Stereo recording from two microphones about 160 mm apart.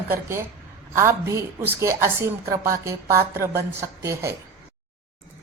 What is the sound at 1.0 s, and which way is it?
A woman's voice, 15° right (ahead or behind).